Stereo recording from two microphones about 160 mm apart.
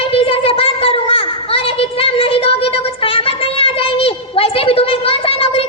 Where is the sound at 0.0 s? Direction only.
35° left (ahead or behind).